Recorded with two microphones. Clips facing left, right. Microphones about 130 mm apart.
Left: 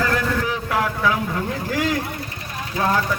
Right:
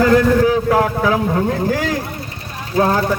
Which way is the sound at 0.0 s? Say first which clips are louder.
Right 10 dB; 35° right (ahead or behind).